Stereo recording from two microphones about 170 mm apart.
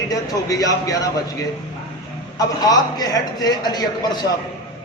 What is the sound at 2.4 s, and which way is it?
Speech, 20° left (ahead or behind).